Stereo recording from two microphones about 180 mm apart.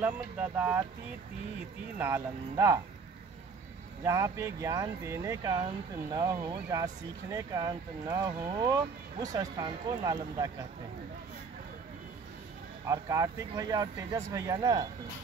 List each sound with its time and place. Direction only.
0.0 s speech: 10° right (ahead or behind)
2.0 s speech: 10° right (ahead or behind)
4.0 s speech: 15° right (ahead or behind)
12.8 s speech: 20° right (ahead or behind)